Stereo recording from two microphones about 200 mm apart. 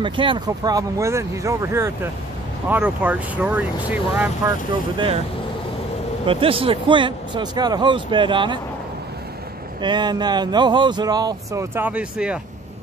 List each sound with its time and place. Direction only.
0.0 s speech: 25° right (ahead or behind); by 4.6 s 10° right (ahead or behind)
4.9 s speech: 25° right (ahead or behind)
6.2 s speech: 25° right (ahead or behind)
9.8 s speech: 20° right (ahead or behind); by 12.4 s 5° right (ahead or behind)